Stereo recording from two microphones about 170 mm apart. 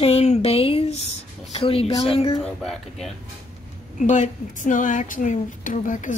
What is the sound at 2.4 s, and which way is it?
Speech, centre (ahead or behind).